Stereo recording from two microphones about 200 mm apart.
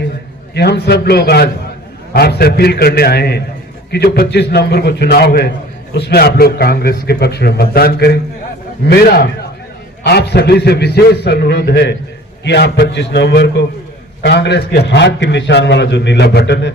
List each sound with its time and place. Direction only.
0.5 s a man's voice: 55° left (ahead or behind)